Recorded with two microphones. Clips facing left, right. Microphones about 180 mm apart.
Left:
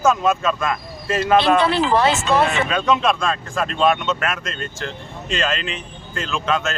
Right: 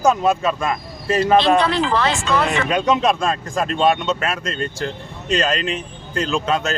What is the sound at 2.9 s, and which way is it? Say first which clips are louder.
A man's voice: right 1 dB; 40° right (ahead or behind).